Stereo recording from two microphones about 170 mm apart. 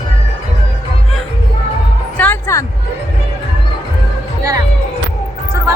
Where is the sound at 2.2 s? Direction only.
15° left (ahead or behind).